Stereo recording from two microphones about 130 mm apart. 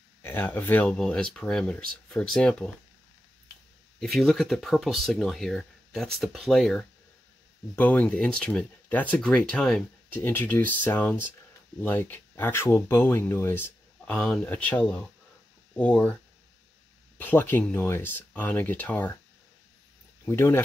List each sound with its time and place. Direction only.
0.2 s speech: 15° left (ahead or behind)
4.0 s speech: centre (ahead or behind); by 13.7 s 20° left (ahead or behind)
14.0 s speech: 5° left (ahead or behind)
17.2 s speech: 15° left (ahead or behind)
20.2 s speech: 20° left (ahead or behind)